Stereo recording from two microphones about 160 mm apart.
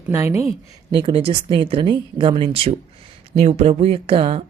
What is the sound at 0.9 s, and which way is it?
Speech, 35° right (ahead or behind).